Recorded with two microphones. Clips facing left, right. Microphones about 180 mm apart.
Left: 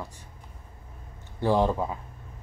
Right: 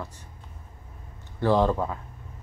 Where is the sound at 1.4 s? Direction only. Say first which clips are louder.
Right 1 dB; 15° left (ahead or behind).